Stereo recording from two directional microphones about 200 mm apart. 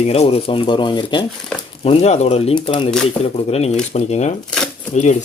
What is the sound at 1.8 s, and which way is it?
Speech, 35° left (ahead or behind).